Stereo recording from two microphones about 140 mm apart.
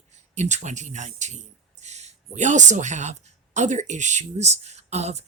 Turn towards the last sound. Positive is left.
turn(degrees=-50)  # may be behind; listen again after turning